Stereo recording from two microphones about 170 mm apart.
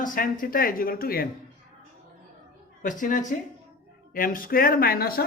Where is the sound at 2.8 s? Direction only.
50° left (ahead or behind).